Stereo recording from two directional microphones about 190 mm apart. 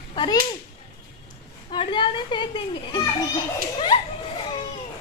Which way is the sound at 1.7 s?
25° left (ahead or behind).